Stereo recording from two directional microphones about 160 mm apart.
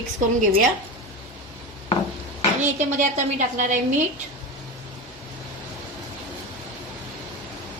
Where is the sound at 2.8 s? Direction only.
50° right (ahead or behind).